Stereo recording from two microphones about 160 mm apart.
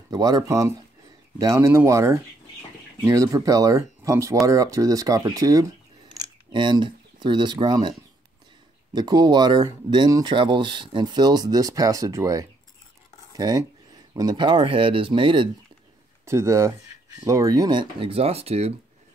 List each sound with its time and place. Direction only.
0.1 s speech: 25° right (ahead or behind)
8.9 s speech: 25° right (ahead or behind)
16.3 s speech: 15° right (ahead or behind); by 18.8 s 40° right (ahead or behind)